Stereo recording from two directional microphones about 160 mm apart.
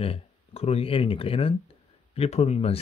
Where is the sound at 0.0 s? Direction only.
35° left (ahead or behind).